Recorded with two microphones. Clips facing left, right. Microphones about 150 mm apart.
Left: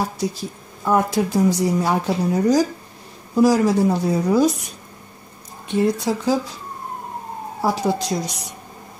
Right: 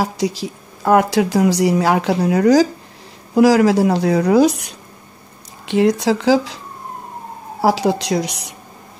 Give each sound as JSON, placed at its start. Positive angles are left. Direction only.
{"t": 0.0, "sound": "a woman's voice", "side_deg": -90}
{"t": 5.7, "sound": "speech", "side_deg": -90}
{"t": 7.6, "sound": "a woman's voice", "side_deg": -90}